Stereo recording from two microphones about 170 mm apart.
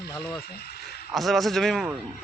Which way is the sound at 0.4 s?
70° left (ahead or behind).